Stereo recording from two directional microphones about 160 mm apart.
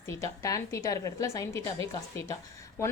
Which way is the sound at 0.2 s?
20° left (ahead or behind).